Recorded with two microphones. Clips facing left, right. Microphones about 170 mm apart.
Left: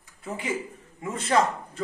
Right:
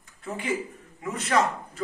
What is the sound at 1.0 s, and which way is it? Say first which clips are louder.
Speech: left 1 dB; 30° left (ahead or behind).